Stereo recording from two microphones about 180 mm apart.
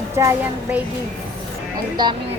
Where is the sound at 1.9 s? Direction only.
25° right (ahead or behind).